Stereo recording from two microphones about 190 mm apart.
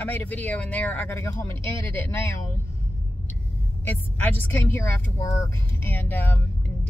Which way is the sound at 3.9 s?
10° left (ahead or behind).